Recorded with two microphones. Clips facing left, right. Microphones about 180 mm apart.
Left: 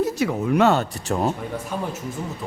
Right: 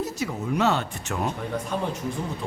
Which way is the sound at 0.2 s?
65° left (ahead or behind).